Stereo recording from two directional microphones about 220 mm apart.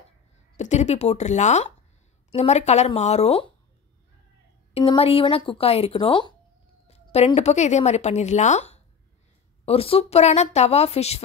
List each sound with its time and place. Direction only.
0.6 s speech: 30° left (ahead or behind)
4.7 s speech: 25° left (ahead or behind)